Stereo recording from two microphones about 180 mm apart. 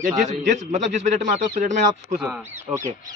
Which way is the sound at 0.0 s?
40° right (ahead or behind).